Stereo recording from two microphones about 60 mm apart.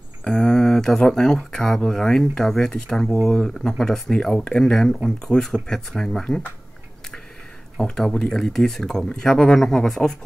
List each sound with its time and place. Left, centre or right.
0.2 s speech: centre
3.3 s speech: centre
3.5 s speech: centre
7.8 s speech: centre
8.1 s speech: left
8.4 s speech: centre